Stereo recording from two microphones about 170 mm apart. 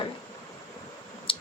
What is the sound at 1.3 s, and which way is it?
Clicking, 30° left (ahead or behind).